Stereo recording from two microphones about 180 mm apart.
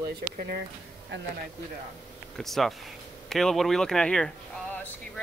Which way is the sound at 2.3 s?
Centre (ahead or behind).